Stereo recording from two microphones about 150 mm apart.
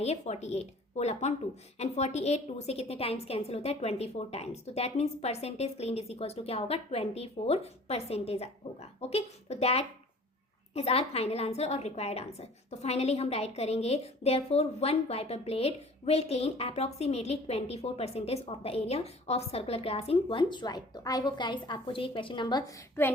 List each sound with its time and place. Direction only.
0.0 s a woman's voice: 45° left (ahead or behind); by 22.8 s 30° left (ahead or behind)